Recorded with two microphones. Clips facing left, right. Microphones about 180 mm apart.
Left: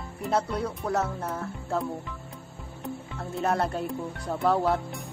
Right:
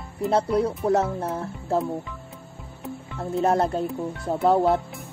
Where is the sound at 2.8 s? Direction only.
Centre (ahead or behind).